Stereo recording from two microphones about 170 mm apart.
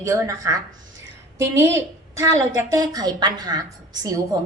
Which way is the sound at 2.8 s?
20° right (ahead or behind).